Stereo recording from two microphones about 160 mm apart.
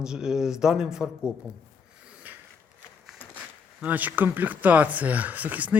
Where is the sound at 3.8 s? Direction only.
10° right (ahead or behind).